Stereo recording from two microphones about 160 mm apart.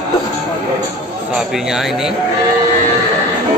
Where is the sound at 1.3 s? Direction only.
5° right (ahead or behind).